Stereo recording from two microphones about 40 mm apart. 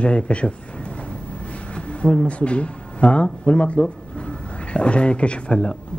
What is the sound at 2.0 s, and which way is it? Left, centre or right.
Speech, left.